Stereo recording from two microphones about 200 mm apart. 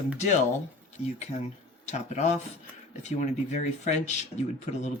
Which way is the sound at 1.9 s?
35° left (ahead or behind).